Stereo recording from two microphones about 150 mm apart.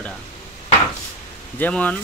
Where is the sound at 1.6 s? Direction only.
10° left (ahead or behind).